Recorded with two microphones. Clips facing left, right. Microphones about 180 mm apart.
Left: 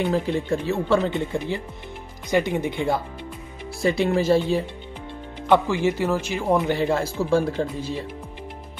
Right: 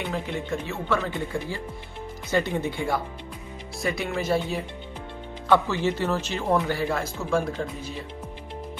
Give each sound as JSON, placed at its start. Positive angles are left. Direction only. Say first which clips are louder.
{"t": 0.1, "sound": "a man's voice", "louder": "left 6 dB", "side_deg": 35}
{"t": 5.5, "sound": "a man's voice", "louder": "left 3 dB", "side_deg": 10}